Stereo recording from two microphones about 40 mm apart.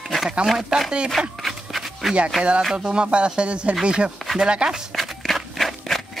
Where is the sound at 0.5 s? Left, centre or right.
Centre.